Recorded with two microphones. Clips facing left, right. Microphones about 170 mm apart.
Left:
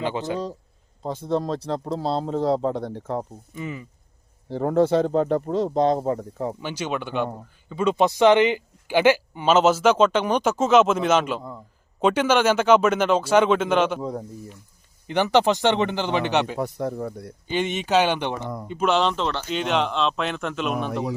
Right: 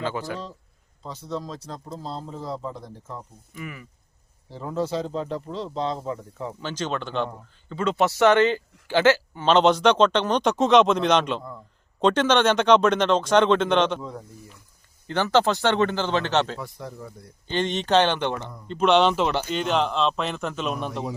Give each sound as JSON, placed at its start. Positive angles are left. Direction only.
{"t": 0.0, "sound": "speech", "side_deg": 20}
{"t": 1.0, "sound": "speech", "side_deg": 50}
{"t": 3.5, "sound": "speech", "side_deg": 25}
{"t": 4.4, "sound": "speech", "side_deg": 60}
{"t": 6.6, "sound": "speech", "side_deg": 10}
{"t": 14.0, "sound": "speech", "side_deg": 40}
{"t": 15.0, "sound": "speech", "side_deg": 15}
{"t": 16.6, "sound": "speech", "side_deg": 50}
{"t": 17.5, "sound": "speech", "side_deg": 10}
{"t": 18.7, "sound": "speech", "side_deg": 5}